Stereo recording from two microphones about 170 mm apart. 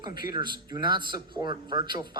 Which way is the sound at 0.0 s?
25° right (ahead or behind).